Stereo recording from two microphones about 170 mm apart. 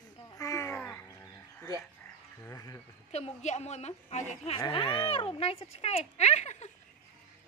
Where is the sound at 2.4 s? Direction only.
20° left (ahead or behind).